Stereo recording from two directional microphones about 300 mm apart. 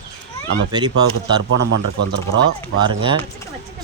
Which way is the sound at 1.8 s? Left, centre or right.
Right.